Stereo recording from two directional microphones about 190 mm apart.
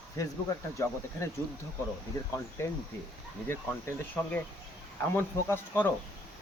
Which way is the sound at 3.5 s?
10° left (ahead or behind).